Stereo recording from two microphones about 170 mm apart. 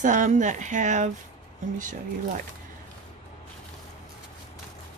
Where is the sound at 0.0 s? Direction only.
45° right (ahead or behind).